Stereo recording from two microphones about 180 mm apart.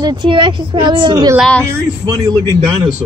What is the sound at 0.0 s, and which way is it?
Speech, 25° right (ahead or behind).